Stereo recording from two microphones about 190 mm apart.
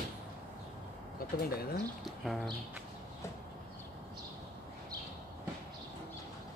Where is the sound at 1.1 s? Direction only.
55° left (ahead or behind).